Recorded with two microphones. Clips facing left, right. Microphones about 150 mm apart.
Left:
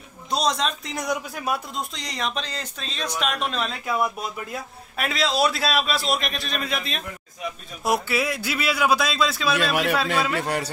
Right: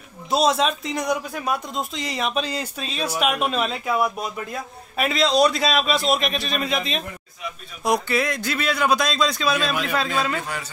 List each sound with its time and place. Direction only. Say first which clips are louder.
0.3 s a man's voice: right 4 dB; 5° right (ahead or behind)
10.3 s speech: left 4 dB; 65° left (ahead or behind)